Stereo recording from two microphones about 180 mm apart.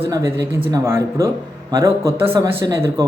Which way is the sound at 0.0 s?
15° right (ahead or behind).